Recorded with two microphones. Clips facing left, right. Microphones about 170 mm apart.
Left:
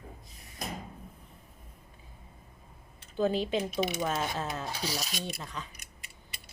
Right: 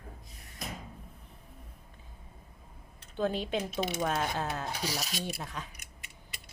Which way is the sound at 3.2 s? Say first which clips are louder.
Left 3 dB; centre (ahead or behind).